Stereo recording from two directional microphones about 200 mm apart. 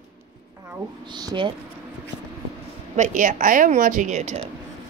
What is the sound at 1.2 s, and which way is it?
Speech, 20° right (ahead or behind).